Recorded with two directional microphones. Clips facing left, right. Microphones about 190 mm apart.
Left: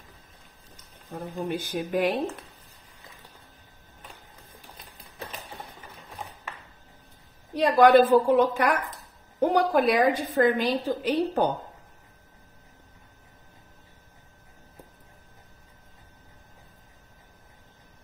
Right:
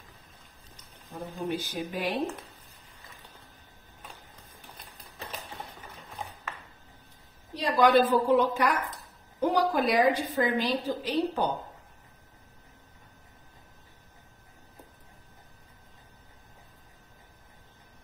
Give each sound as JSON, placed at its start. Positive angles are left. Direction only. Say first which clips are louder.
{"t": 1.5, "sound": "a woman's voice", "louder": "left 6 dB", "side_deg": 55}
{"t": 7.5, "sound": "a woman's voice", "louder": "left 5 dB", "side_deg": 55}